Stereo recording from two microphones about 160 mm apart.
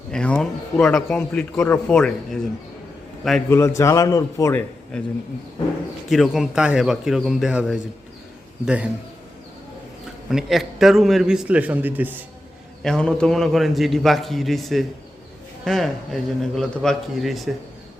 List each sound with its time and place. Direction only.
0.1 s a man's voice: 5° left (ahead or behind)
3.5 s a man's voice: 20° left (ahead or behind)
6.1 s a man's voice: centre (ahead or behind)
10.2 s a man's voice: centre (ahead or behind)
12.8 s a man's voice: 5° left (ahead or behind)